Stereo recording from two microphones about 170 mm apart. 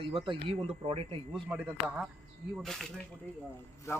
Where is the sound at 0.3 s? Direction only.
35° right (ahead or behind).